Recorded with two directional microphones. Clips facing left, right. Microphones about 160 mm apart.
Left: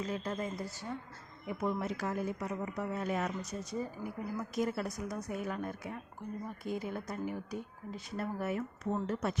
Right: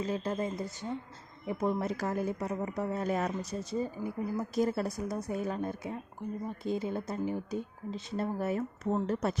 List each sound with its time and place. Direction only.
0.0 s a woman's voice: 30° right (ahead or behind)
1.5 s a woman's voice: 35° right (ahead or behind)